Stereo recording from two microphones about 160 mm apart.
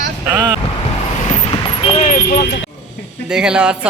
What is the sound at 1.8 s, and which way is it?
Vehicle, 35° left (ahead or behind).